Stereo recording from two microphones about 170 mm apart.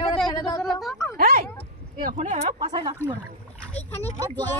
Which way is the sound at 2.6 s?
25° right (ahead or behind).